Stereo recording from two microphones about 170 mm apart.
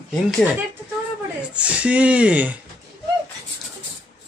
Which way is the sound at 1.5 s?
5° right (ahead or behind).